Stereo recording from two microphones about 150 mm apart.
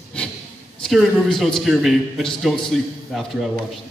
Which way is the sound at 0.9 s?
Centre (ahead or behind).